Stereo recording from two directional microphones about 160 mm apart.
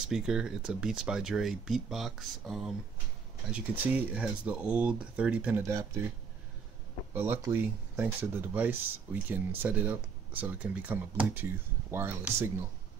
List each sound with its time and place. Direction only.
0.1 s speech: 5° right (ahead or behind)
5.6 s speech: 20° right (ahead or behind)
7.2 s speech: 15° right (ahead or behind)